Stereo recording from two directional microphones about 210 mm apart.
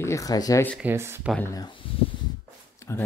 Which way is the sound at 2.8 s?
10° left (ahead or behind).